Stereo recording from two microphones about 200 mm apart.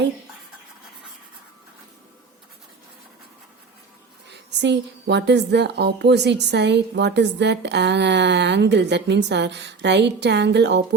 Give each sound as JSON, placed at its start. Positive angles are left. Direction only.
{"t": 4.3, "sound": "a woman's voice", "side_deg": -60}